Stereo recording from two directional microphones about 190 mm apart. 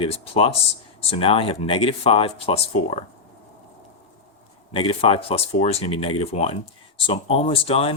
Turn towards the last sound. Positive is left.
turn(degrees=30)  # may be behind; listen again after turning